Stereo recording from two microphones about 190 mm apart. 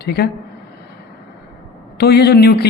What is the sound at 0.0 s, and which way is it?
Speech, 60° left (ahead or behind).